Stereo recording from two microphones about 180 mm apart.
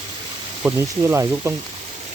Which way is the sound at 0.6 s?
15° right (ahead or behind).